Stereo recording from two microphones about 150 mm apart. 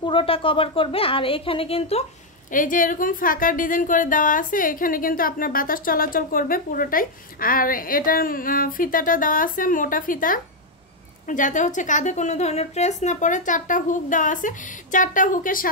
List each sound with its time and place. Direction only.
0.0 s a woman's voice: 35° left (ahead or behind)
2.5 s a woman's voice: 65° left (ahead or behind)